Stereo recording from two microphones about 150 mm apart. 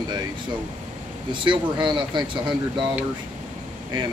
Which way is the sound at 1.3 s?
30° right (ahead or behind).